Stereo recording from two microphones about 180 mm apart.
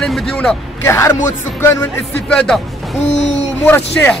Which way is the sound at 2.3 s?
5° left (ahead or behind).